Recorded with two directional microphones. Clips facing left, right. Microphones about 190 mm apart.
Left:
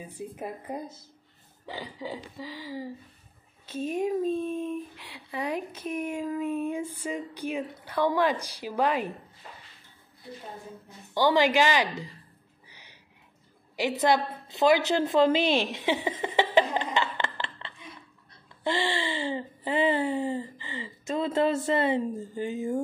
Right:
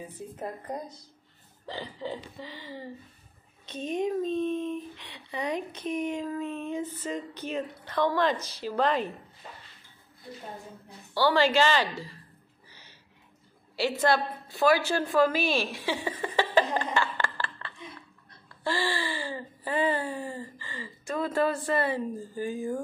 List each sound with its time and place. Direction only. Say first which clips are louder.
0.4 s speech: right 1 dB; 5° left (ahead or behind)
11.1 s speech: left 1 dB; 15° left (ahead or behind)
12.6 s a sound: left 2 dB; 15° left (ahead or behind)
18.6 s speech: left 2 dB; 20° left (ahead or behind)